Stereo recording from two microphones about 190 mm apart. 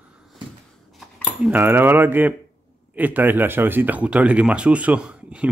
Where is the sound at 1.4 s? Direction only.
10° right (ahead or behind).